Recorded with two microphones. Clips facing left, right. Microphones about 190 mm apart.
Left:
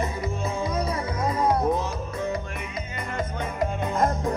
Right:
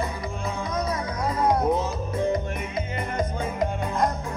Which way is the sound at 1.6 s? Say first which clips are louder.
Right 1 dB; 20° right (ahead or behind).